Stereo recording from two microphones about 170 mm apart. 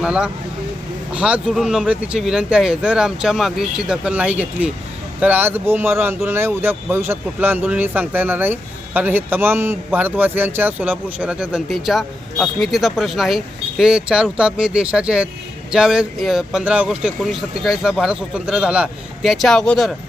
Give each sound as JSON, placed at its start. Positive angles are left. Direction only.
{"t": 0.0, "sound": "speech", "side_deg": -5}